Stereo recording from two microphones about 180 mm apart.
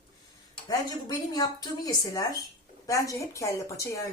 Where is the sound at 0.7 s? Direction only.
20° left (ahead or behind).